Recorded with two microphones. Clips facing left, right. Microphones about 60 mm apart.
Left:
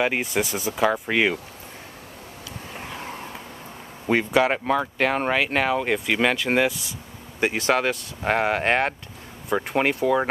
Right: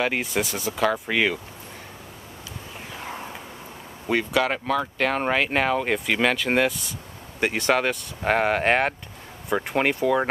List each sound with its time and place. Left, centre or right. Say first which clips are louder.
0.0 s speech: left 1 dB; centre
4.1 s speech: left 3 dB; left
5.0 s speech: even; centre